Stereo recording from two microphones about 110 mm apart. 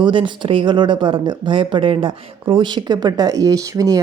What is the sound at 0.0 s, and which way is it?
A woman's voice, 50° right (ahead or behind).